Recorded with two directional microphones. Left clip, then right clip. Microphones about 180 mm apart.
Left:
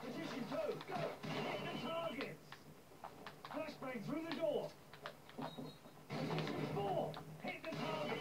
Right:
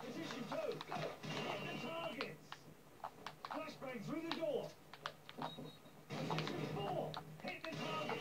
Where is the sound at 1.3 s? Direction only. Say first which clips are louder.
Left 1 dB; 30° right (ahead or behind).